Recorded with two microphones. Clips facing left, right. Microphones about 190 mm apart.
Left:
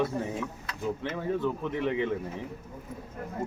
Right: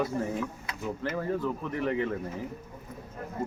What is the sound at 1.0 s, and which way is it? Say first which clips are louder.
Speech: right 2 dB; centre (ahead or behind).